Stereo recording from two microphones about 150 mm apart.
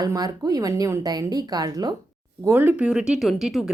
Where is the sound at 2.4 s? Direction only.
15° right (ahead or behind).